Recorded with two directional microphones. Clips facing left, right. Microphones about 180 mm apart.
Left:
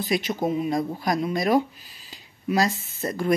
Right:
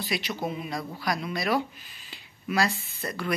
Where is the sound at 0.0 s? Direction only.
45° left (ahead or behind).